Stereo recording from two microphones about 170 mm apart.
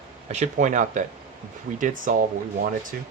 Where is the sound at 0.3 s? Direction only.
40° right (ahead or behind).